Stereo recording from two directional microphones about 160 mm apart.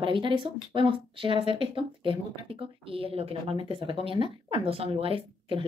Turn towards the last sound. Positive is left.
turn(degrees=-35)  # may be behind; listen again after turning